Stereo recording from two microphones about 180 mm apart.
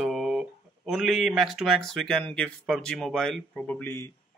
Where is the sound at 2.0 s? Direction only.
5° left (ahead or behind).